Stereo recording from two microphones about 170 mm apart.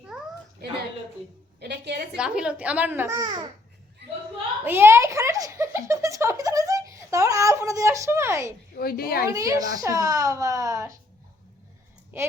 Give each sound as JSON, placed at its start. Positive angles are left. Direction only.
{"t": 0.1, "sound": "cat", "side_deg": -5}
{"t": 1.5, "sound": "a sound", "side_deg": -75}
{"t": 2.1, "sound": "a child's voice", "side_deg": -5}
{"t": 4.6, "sound": "a sound", "side_deg": -15}
{"t": 8.7, "sound": "a woman's voice", "side_deg": 60}
{"t": 9.3, "sound": "speech", "side_deg": -20}
{"t": 12.1, "sound": "a child's voice", "side_deg": -15}